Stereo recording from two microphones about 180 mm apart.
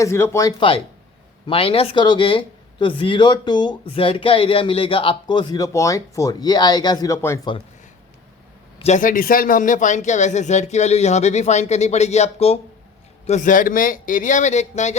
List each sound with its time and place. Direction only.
0.0 s speech: 15° left (ahead or behind)
1.5 s speech: 30° left (ahead or behind)
8.8 s a man's voice: 45° left (ahead or behind)